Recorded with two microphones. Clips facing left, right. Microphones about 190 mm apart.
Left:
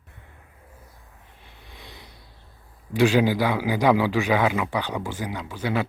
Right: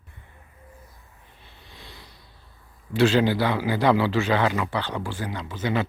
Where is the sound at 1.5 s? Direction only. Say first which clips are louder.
Left 1 dB; 15° left (ahead or behind).